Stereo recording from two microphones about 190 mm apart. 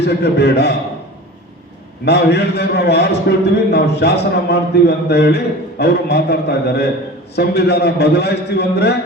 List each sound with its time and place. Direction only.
0.0 s a man's voice: 60° left (ahead or behind)
2.0 s a man's voice: 60° left (ahead or behind)